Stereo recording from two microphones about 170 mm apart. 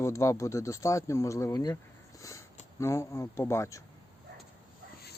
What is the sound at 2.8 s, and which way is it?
Speech, 15° left (ahead or behind).